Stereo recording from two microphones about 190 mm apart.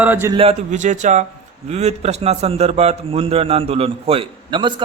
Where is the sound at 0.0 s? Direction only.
10° right (ahead or behind).